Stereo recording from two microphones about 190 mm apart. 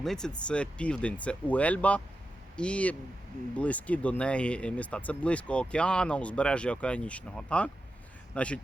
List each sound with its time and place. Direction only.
0.0 s speech: 5° left (ahead or behind)